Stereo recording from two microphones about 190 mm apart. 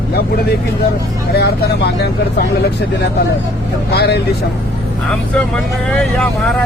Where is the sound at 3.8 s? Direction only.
60° left (ahead or behind).